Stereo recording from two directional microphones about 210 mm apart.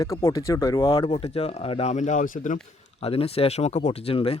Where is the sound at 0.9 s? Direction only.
25° left (ahead or behind).